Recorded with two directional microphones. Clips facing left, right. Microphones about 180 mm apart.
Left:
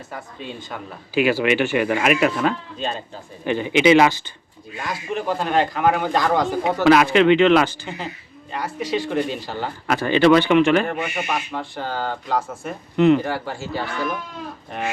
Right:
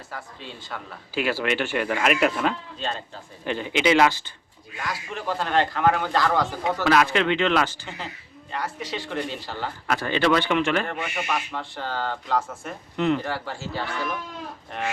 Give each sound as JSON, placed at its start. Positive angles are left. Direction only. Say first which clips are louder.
{"t": 0.1, "sound": "speech", "louder": "left 5 dB", "side_deg": 20}